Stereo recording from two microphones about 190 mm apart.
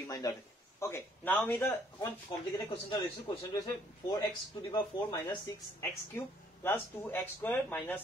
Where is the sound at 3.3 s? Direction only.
20° left (ahead or behind).